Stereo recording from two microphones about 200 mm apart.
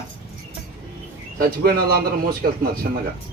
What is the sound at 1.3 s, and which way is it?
A man's voice, 50° right (ahead or behind).